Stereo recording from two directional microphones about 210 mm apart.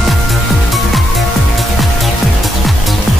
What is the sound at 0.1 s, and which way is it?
Music, centre (ahead or behind).